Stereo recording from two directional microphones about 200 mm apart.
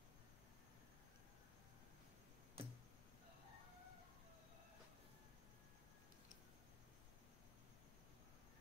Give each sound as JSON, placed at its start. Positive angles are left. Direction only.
{"t": 2.6, "sound": "tick-tock", "side_deg": -25}